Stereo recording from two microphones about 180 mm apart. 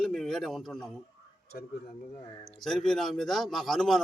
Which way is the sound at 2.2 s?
35° left (ahead or behind).